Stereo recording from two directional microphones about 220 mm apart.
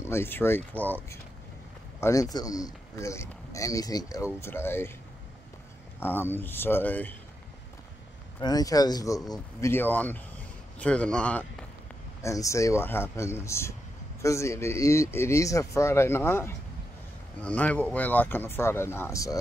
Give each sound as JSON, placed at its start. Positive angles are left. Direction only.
{"t": 0.0, "sound": "speech", "side_deg": 10}
{"t": 5.9, "sound": "speech", "side_deg": 10}
{"t": 8.4, "sound": "a man's voice", "side_deg": 15}